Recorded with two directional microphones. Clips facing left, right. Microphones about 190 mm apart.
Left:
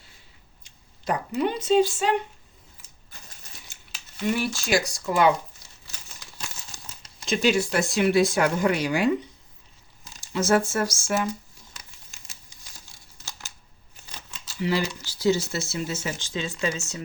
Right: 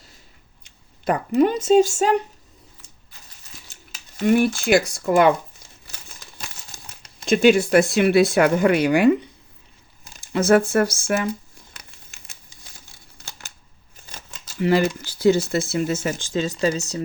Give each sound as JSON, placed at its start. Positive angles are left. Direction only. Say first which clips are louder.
{"t": 0.6, "sound": "speech", "louder": "right 8 dB", "side_deg": -60}
{"t": 4.2, "sound": "speech", "louder": "right 8 dB", "side_deg": -55}
{"t": 7.0, "sound": "speech", "louder": "right 8 dB", "side_deg": -55}
{"t": 11.7, "sound": "crumpling", "louder": "even", "side_deg": -60}
{"t": 13.1, "sound": "a sound", "louder": "right 1 dB", "side_deg": -55}
{"t": 14.6, "sound": "speech", "louder": "right 7 dB", "side_deg": -50}